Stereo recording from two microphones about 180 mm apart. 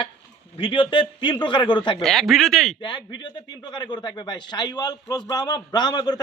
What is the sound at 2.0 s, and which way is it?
Speech, centre (ahead or behind).